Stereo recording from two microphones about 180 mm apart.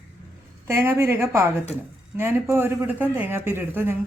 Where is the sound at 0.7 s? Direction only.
15° right (ahead or behind).